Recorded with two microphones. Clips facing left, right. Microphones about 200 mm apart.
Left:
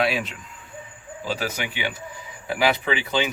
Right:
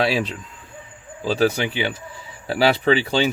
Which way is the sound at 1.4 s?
30° right (ahead or behind).